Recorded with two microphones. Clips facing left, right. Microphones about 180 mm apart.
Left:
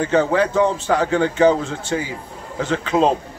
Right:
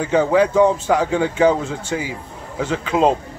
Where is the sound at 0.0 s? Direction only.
5° right (ahead or behind).